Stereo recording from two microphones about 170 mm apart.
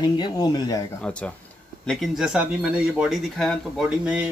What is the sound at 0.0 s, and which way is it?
Speech, 25° left (ahead or behind).